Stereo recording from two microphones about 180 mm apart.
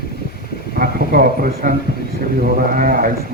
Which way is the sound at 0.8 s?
55° right (ahead or behind).